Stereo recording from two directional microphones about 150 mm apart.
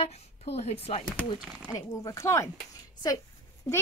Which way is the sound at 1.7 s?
25° left (ahead or behind).